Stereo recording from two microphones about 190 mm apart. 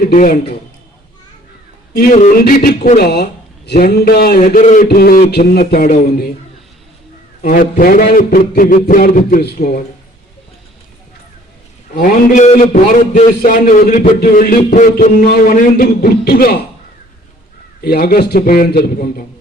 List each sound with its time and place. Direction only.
0.0 s a man's voice: 45° left (ahead or behind)
2.4 s a man's voice: 50° left (ahead or behind)
7.4 s a man's voice: 50° left (ahead or behind)
11.9 s a man's voice: 50° left (ahead or behind)
17.8 s a man's voice: 50° left (ahead or behind)